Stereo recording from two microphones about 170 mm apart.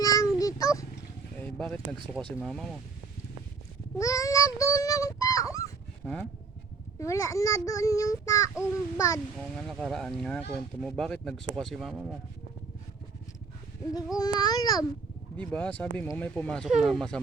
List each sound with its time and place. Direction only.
0.0 s child singing: 20° left (ahead or behind)
1.4 s a sound: 5° left (ahead or behind)
2.4 s speech: centre (ahead or behind)
3.9 s child singing: 20° left (ahead or behind)
6.0 s speech: centre (ahead or behind)
7.0 s child singing: 20° left (ahead or behind)
9.4 s speech: 5° left (ahead or behind)
14.2 s child singing: 25° left (ahead or behind)
15.4 s speech: 5° left (ahead or behind)